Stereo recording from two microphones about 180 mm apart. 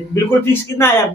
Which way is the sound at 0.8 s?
15° left (ahead or behind).